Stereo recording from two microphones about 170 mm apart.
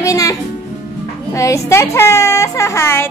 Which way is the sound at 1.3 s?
20° left (ahead or behind).